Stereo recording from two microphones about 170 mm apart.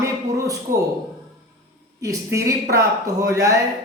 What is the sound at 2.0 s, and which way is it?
Speech, 20° right (ahead or behind).